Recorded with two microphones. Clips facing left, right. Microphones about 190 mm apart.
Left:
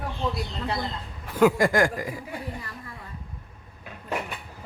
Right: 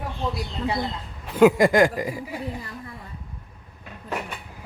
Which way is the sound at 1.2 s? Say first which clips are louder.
Right 4 dB; 20° right (ahead or behind).